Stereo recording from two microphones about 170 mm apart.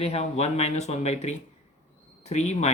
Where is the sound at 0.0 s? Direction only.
35° left (ahead or behind).